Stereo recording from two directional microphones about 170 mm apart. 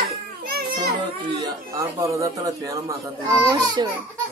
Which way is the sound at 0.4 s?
60° right (ahead or behind).